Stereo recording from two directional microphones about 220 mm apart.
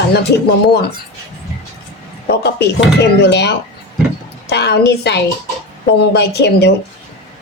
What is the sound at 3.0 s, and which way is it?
Speech, 50° left (ahead or behind).